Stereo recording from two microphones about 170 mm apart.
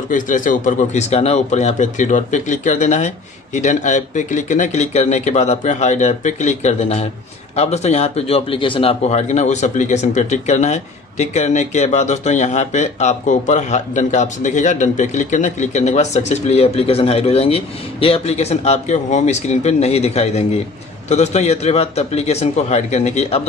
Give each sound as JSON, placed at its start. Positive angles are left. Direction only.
{"t": 0.1, "sound": "a man's voice", "side_deg": 50}